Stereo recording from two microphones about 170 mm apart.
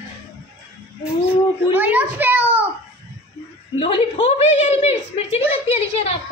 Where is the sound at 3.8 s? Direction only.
35° left (ahead or behind).